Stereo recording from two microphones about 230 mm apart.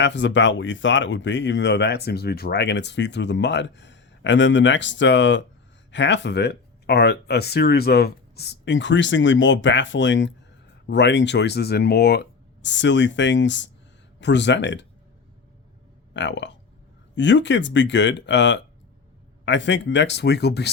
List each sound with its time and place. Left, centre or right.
0.0 s speech: left
16.1 s speech: left